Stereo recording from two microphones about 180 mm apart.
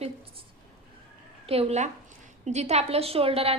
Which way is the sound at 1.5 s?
35° right (ahead or behind).